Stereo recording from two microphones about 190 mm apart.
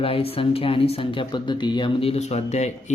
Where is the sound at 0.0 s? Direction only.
30° left (ahead or behind).